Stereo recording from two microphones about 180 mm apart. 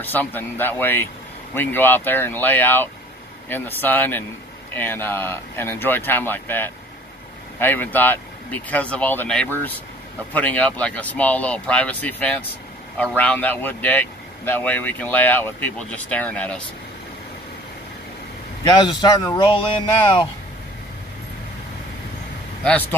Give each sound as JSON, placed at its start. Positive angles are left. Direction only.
{"t": 0.0, "sound": "speech", "side_deg": 10}
{"t": 18.6, "sound": "a man's voice", "side_deg": 25}
{"t": 22.6, "sound": "speech", "side_deg": 10}